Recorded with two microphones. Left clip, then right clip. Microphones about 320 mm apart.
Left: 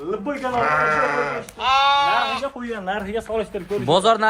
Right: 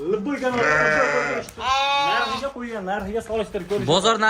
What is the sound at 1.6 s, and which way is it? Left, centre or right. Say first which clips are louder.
Speech: left 4 dB; left.